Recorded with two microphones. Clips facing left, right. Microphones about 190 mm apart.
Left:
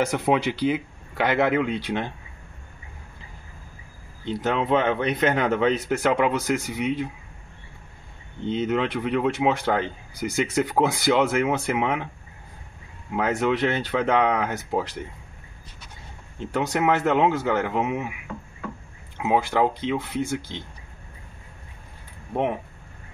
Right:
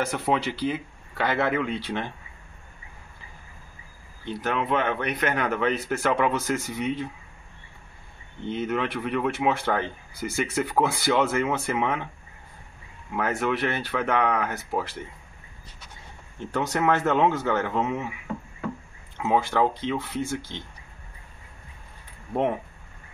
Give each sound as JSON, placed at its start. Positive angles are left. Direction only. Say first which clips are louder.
{"t": 0.0, "sound": "speech", "louder": "left 3 dB", "side_deg": 15}
{"t": 4.3, "sound": "a man's voice", "louder": "left 4 dB", "side_deg": 25}
{"t": 8.5, "sound": "speech", "louder": "left 3 dB", "side_deg": 20}
{"t": 13.1, "sound": "a man's voice", "louder": "left 3 dB", "side_deg": 20}
{"t": 16.3, "sound": "speech", "louder": "left 2 dB", "side_deg": 15}
{"t": 19.1, "sound": "speech", "louder": "left 1 dB", "side_deg": 10}
{"t": 22.3, "sound": "speech", "louder": "even", "side_deg": 5}